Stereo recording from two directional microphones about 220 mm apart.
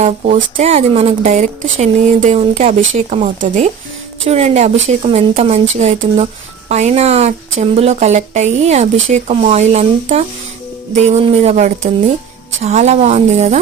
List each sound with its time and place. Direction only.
0.0 s a woman's voice: 30° right (ahead or behind)